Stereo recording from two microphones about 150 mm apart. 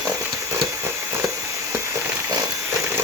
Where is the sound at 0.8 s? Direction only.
15° right (ahead or behind).